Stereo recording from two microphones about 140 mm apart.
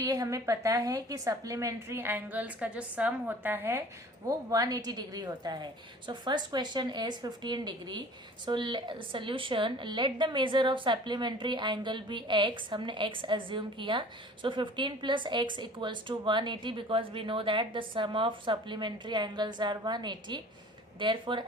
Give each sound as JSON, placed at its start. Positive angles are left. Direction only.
{"t": 0.0, "sound": "a woman's voice", "side_deg": -25}